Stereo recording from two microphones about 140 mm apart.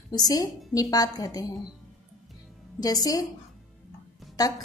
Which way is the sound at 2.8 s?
25° left (ahead or behind).